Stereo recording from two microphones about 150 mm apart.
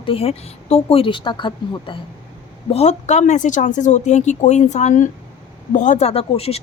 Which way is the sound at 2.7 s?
50° left (ahead or behind).